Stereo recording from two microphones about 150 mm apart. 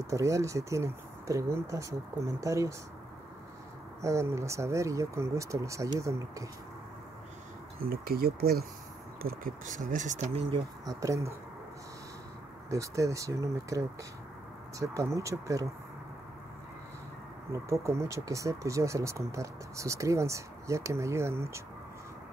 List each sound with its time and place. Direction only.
0.0 s speech: 20° right (ahead or behind)
4.0 s speech: 20° right (ahead or behind)
7.8 s speech: 80° right
9.4 s speech: 60° right (ahead or behind)
10.9 s speech: 20° right (ahead or behind)
12.6 s speech: 20° right (ahead or behind)
17.5 s speech: 20° right (ahead or behind)